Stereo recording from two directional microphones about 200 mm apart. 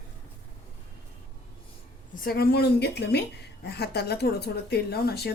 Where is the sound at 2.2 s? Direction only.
50° left (ahead or behind).